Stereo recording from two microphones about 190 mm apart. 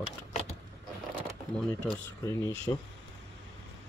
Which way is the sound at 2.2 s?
15° left (ahead or behind).